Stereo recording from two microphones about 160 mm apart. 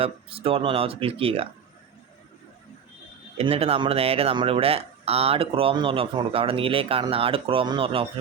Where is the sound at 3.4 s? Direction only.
40° right (ahead or behind).